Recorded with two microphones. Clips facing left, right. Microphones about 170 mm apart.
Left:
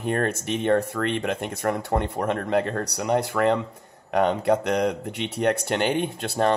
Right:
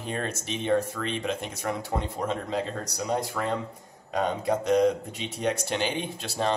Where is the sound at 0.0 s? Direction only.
60° left (ahead or behind).